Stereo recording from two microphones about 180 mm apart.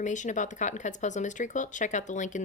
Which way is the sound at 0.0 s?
45° left (ahead or behind).